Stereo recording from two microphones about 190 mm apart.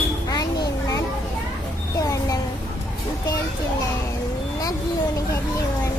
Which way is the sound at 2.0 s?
15° left (ahead or behind).